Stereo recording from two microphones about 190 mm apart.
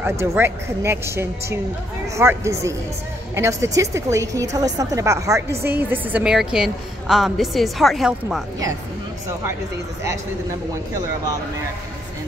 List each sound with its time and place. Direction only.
0.0 s a woman's voice: 15° right (ahead or behind)